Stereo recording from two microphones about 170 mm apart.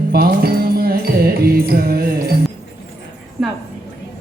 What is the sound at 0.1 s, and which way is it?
Music, 65° right (ahead or behind).